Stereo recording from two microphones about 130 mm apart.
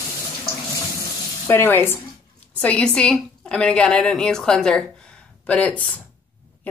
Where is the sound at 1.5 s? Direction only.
20° left (ahead or behind).